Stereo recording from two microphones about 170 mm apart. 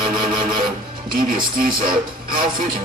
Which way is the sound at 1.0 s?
55° right (ahead or behind).